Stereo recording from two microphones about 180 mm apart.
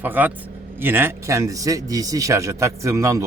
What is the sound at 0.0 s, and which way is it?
Speech, 10° right (ahead or behind).